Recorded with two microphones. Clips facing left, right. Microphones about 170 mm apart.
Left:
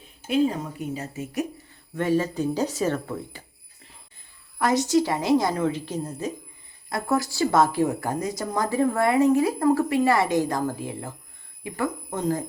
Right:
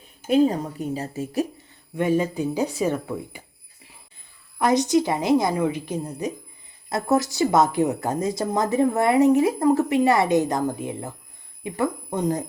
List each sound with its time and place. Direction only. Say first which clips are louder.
0.3 s a woman's voice: right 4 dB; 40° right (ahead or behind)
2.0 s a woman's voice: right 1 dB; 15° right (ahead or behind)
4.6 s a woman's voice: right 2 dB; 20° right (ahead or behind)